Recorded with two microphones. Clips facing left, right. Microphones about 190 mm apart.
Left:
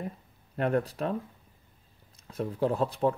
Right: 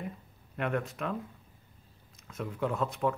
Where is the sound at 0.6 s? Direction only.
35° left (ahead or behind).